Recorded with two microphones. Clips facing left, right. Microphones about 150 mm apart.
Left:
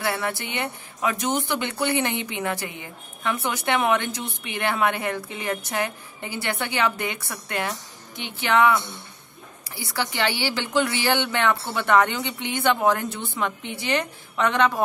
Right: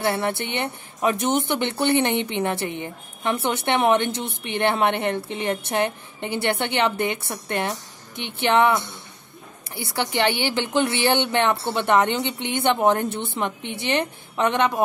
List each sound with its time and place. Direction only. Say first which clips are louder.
0.0 s speech: right 3 dB; 25° right (ahead or behind)
9.9 s speech: right 3 dB; 20° right (ahead or behind)